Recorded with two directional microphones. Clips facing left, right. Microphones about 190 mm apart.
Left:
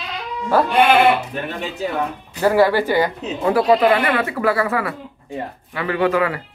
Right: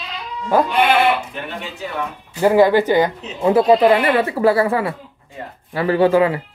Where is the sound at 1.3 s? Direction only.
40° left (ahead or behind).